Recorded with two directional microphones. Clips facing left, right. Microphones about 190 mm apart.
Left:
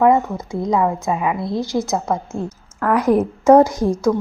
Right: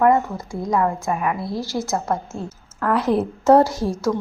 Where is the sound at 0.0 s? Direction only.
20° left (ahead or behind).